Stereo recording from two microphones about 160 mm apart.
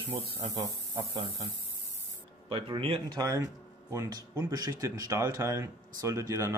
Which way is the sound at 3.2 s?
20° right (ahead or behind).